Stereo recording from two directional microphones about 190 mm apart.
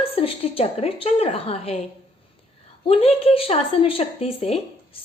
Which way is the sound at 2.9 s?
30° left (ahead or behind).